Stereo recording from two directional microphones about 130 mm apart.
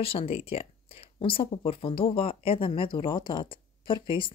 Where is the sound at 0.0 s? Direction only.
45° left (ahead or behind).